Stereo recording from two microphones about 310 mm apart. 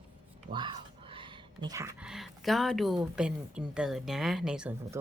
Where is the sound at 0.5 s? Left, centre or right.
Right.